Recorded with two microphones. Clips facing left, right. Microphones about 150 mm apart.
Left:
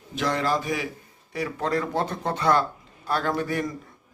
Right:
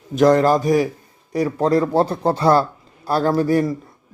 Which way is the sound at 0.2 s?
45° right (ahead or behind).